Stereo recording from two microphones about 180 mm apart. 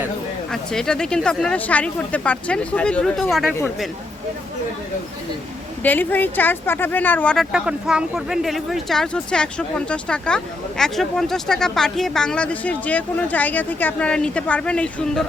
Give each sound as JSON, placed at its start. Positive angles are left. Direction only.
{"t": 0.5, "sound": "speech", "side_deg": 5}
{"t": 5.8, "sound": "speech", "side_deg": 10}